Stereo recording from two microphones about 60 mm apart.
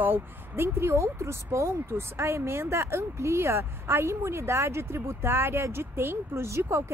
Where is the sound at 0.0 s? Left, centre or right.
Right.